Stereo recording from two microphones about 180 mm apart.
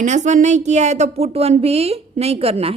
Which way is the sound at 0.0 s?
40° right (ahead or behind).